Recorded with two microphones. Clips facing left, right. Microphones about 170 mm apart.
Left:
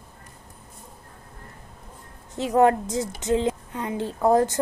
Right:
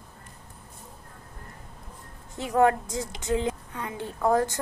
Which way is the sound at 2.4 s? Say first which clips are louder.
Left 3 dB; 25° left (ahead or behind).